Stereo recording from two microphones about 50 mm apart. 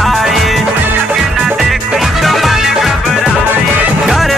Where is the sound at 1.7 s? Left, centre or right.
Centre.